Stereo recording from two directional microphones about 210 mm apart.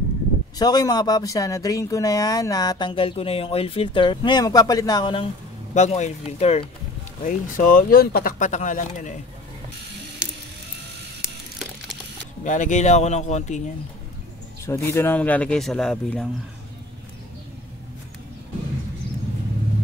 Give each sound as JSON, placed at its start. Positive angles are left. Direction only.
{"t": 0.6, "sound": "speech", "side_deg": 20}
{"t": 7.2, "sound": "speech", "side_deg": 40}
{"t": 12.4, "sound": "speech", "side_deg": 35}
{"t": 14.7, "sound": "speech", "side_deg": 10}